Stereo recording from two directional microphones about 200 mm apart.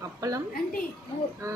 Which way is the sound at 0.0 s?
15° right (ahead or behind).